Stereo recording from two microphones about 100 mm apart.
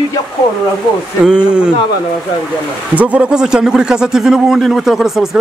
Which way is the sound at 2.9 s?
15° right (ahead or behind).